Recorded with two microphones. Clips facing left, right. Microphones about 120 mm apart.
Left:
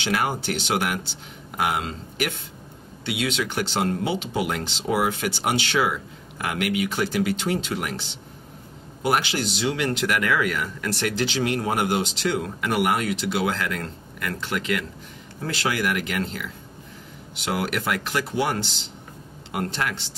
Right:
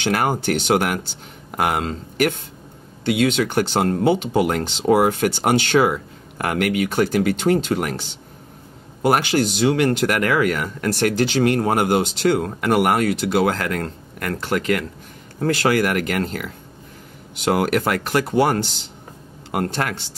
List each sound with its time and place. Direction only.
0.0 s speech: 50° right (ahead or behind)